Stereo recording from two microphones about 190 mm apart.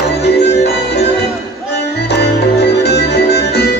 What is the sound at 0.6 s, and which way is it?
Music, 60° left (ahead or behind).